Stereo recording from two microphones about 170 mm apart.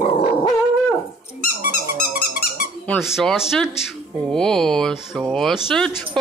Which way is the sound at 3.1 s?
Centre (ahead or behind).